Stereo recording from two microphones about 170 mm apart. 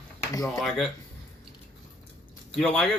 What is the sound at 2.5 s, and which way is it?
Speech, 5° left (ahead or behind).